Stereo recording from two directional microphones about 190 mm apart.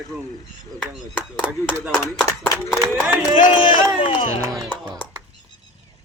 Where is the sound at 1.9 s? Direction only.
15° left (ahead or behind).